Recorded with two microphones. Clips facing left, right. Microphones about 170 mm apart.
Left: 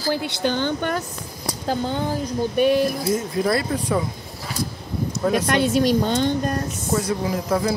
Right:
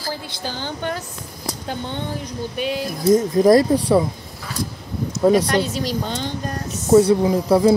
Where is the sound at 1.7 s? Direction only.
40° left (ahead or behind); by 2.9 s 55° left (ahead or behind).